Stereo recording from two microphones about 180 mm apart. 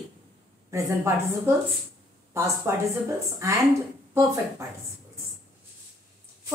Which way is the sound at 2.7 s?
15° right (ahead or behind).